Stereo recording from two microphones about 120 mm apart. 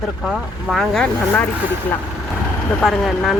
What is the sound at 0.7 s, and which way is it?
Speech, centre (ahead or behind).